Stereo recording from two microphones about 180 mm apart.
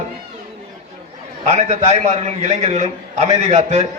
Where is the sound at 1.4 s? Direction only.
40° right (ahead or behind).